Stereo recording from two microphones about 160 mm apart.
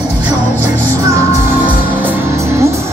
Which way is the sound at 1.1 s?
15° right (ahead or behind).